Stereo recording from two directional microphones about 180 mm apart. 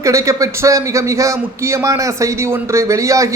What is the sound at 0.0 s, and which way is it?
A man's voice, 15° right (ahead or behind).